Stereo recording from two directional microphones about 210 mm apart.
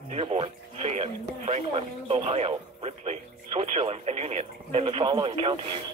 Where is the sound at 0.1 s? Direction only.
30° right (ahead or behind).